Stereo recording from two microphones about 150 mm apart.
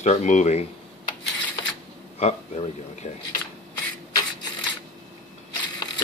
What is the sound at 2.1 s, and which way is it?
Speech, 45° left (ahead or behind).